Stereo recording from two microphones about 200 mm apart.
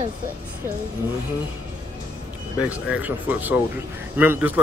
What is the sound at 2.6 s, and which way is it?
Speech, 5° right (ahead or behind).